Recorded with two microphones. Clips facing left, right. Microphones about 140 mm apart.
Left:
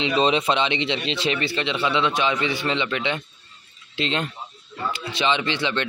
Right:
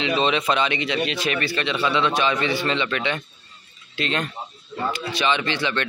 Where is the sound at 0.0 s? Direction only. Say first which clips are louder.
Left 1 dB; 30° left (ahead or behind).